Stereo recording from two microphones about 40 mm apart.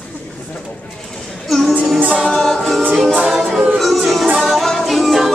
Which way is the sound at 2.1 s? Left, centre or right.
Centre.